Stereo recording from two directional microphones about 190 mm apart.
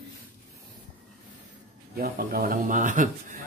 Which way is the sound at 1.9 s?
50° right (ahead or behind).